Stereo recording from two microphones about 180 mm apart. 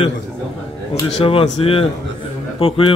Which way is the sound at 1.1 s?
30° left (ahead or behind).